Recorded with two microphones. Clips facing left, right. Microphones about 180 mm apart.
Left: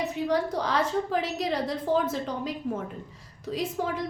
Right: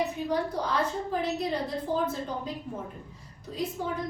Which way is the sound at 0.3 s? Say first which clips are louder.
Left 2 dB; 90° left.